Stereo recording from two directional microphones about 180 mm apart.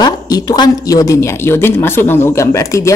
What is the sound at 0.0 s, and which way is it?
Speech, 20° left (ahead or behind).